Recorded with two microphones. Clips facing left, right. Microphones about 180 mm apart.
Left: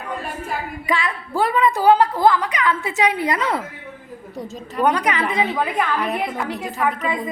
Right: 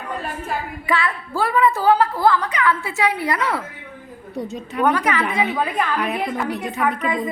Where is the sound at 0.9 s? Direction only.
15° left (ahead or behind).